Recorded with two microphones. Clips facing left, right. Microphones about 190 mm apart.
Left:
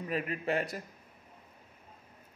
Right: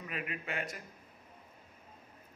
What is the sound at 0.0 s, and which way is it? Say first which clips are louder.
Speech: left 7 dB; 35° left (ahead or behind).